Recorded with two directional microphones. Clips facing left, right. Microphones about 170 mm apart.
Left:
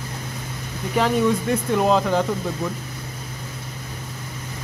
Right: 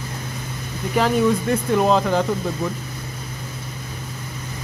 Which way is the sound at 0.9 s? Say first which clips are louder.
Right 1 dB; centre (ahead or behind).